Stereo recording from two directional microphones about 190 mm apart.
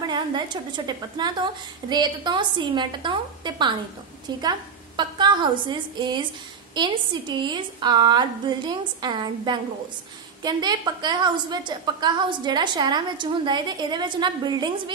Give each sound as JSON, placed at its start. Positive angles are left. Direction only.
{"t": 0.0, "sound": "a woman's voice", "side_deg": -25}